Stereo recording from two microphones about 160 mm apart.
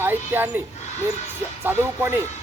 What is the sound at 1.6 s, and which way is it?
Speech, 15° right (ahead or behind).